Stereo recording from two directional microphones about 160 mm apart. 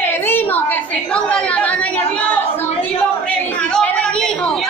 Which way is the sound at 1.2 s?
10° left (ahead or behind).